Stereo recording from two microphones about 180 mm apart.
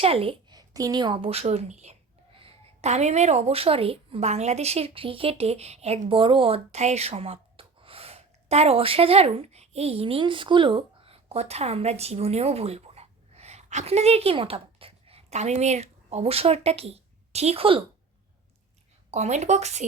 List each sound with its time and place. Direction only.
0.0 s speech: 30° right (ahead or behind)
19.1 s speech: 40° right (ahead or behind)